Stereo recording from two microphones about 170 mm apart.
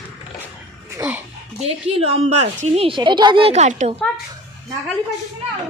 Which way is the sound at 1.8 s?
35° right (ahead or behind).